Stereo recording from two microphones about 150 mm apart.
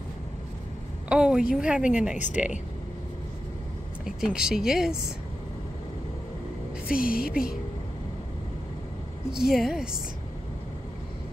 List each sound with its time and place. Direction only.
1.0 s a sound: 5° right (ahead or behind)
1.6 s a woman's voice: 5° right (ahead or behind)
4.0 s speech: 5° right (ahead or behind)
7.0 s speech: 75° left (ahead or behind)
7.2 s a woman's voice: 5° right (ahead or behind)
9.3 s a woman's voice: centre (ahead or behind)